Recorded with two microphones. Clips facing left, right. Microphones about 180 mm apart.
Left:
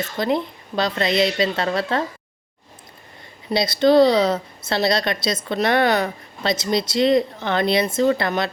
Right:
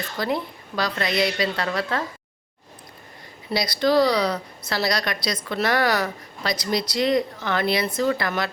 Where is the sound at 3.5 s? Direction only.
25° left (ahead or behind).